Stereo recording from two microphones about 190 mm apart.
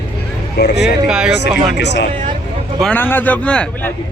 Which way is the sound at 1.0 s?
5° right (ahead or behind).